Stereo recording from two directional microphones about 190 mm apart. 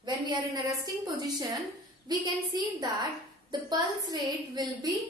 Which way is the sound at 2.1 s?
20° right (ahead or behind).